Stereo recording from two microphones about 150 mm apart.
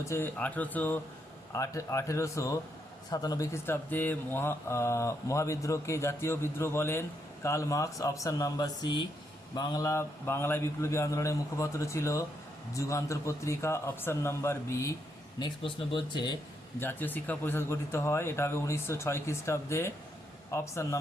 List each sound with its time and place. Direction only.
0.0 s a man's voice: 15° left (ahead or behind)
15.4 s speech: 30° left (ahead or behind)
16.8 s a man's voice: 10° left (ahead or behind)